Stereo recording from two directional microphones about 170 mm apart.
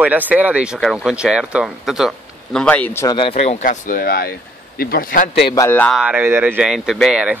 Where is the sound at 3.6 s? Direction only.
50° left (ahead or behind).